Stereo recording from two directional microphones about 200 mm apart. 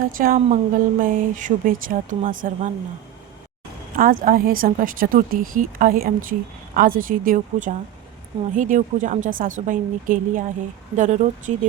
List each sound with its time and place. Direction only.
0.0 s speech: 45° right (ahead or behind)
3.9 s speech: 45° right (ahead or behind)